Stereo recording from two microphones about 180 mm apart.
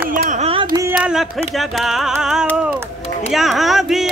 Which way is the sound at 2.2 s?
5° right (ahead or behind).